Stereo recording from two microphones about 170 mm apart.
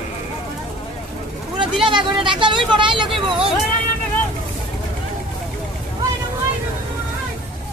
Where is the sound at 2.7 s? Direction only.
30° right (ahead or behind).